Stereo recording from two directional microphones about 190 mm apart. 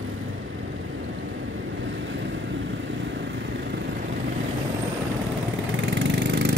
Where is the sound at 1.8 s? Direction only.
75° right (ahead or behind).